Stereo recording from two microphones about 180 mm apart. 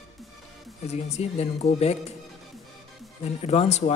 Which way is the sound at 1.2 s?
35° left (ahead or behind).